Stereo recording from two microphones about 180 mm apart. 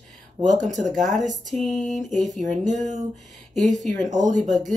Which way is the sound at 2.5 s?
40° right (ahead or behind).